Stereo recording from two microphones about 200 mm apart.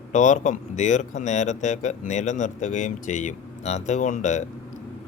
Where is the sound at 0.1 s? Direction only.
40° left (ahead or behind).